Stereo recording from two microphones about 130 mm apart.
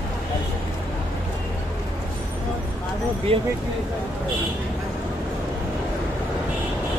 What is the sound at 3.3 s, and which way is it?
Speech, 45° right (ahead or behind).